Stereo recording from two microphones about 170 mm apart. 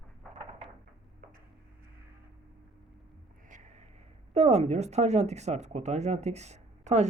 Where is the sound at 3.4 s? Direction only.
45° right (ahead or behind).